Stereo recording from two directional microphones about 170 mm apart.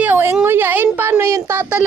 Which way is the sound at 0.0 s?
10° right (ahead or behind).